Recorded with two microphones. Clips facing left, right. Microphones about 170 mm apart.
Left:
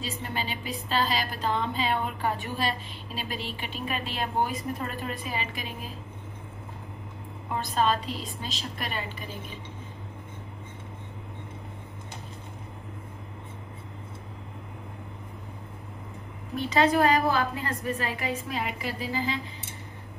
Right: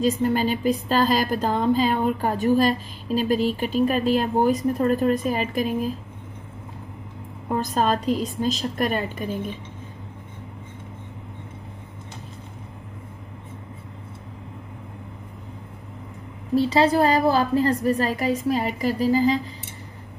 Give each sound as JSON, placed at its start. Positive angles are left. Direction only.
{"t": 0.0, "sound": "a woman's voice", "side_deg": -45}
{"t": 7.7, "sound": "a woman's voice", "side_deg": -45}
{"t": 16.5, "sound": "a woman's voice", "side_deg": -30}